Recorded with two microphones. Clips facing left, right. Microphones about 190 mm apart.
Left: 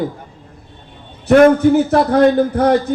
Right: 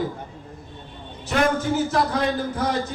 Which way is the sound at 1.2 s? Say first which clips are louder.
Left 13 dB; 60° left (ahead or behind).